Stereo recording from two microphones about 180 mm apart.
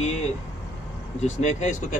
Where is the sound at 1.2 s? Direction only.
40° left (ahead or behind).